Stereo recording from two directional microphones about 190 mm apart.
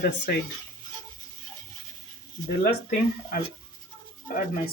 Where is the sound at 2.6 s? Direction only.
50° left (ahead or behind).